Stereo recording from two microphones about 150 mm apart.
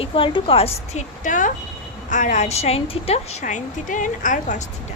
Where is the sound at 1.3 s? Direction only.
60° left (ahead or behind); by 3.4 s 40° left (ahead or behind).